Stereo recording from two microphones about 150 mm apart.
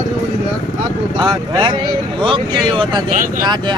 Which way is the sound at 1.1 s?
30° right (ahead or behind).